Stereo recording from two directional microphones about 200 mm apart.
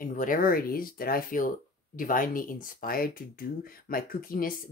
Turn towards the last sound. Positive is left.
turn(degrees=45)  # may be behind; listen again after turning